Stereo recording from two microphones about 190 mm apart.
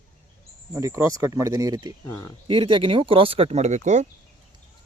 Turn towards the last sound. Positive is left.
turn(degrees=-40)  # may be behind; listen again after turning